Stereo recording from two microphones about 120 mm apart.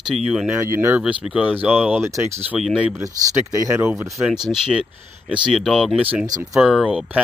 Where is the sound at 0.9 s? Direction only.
10° right (ahead or behind).